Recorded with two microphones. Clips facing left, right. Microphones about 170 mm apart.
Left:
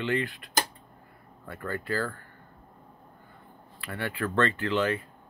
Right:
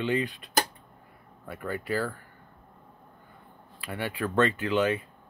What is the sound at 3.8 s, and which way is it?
Speech, 15° right (ahead or behind).